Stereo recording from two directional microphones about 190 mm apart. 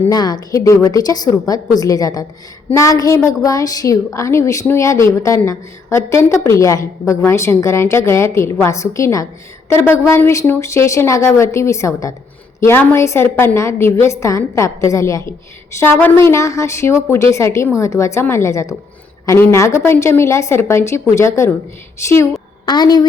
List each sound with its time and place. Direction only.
0.1 s a woman's voice: 20° left (ahead or behind)
22.6 s a woman's voice: 20° left (ahead or behind)